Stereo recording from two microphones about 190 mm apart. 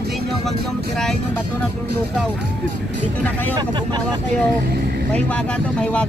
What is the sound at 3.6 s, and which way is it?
Speech, 25° right (ahead or behind).